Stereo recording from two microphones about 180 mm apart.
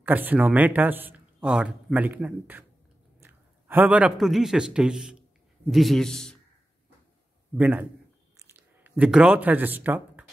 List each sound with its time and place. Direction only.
0.0 s a man's voice: 10° right (ahead or behind)
7.5 s a man's voice: 10° right (ahead or behind)
8.4 s a sound: 10° right (ahead or behind)